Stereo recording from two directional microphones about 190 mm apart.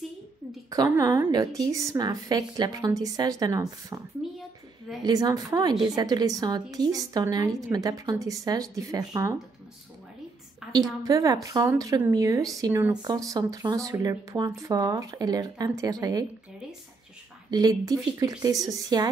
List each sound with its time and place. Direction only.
0.7 s a woman's voice: 15° right (ahead or behind)
4.2 s a sound: centre (ahead or behind)
5.0 s a woman's voice: 20° right (ahead or behind)
10.7 s a woman's voice: 20° right (ahead or behind)
17.5 s a woman's voice: 20° right (ahead or behind)